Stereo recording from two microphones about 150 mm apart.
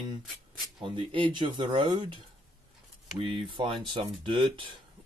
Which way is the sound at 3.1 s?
35° right (ahead or behind).